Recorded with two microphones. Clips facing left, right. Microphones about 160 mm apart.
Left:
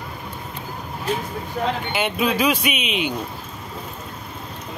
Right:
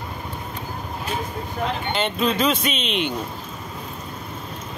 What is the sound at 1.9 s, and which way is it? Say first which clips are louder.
Speech: even; 10° left (ahead or behind).